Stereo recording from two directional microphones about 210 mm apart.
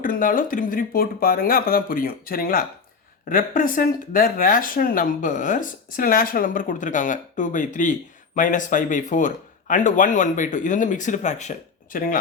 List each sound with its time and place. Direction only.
0.0 s speech: 40° left (ahead or behind)